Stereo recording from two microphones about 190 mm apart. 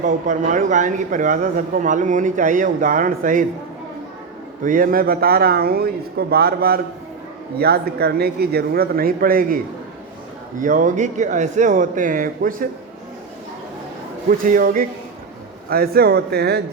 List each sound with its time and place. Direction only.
0.0 s a man's voice: 40° right (ahead or behind)
4.6 s a man's voice: 45° right (ahead or behind)
10.6 s a man's voice: 45° right (ahead or behind)
14.3 s a man's voice: 45° right (ahead or behind)